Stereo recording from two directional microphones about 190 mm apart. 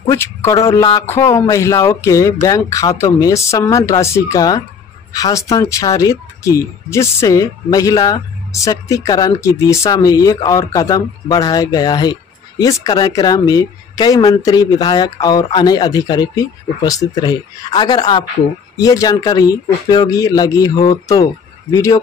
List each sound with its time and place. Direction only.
0.1 s speech: 15° left (ahead or behind)